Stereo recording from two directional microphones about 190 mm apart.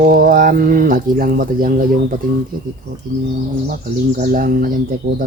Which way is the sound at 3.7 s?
50° right (ahead or behind).